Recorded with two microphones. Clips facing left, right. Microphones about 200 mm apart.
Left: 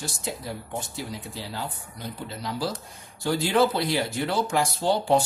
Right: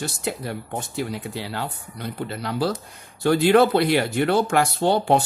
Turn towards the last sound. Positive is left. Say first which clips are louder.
# right 3 dB
turn(degrees=-60)  # may be behind; listen again after turning